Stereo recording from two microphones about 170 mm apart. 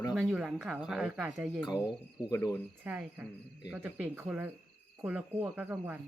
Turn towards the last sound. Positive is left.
turn(degrees=-10)  # may be behind; listen again after turning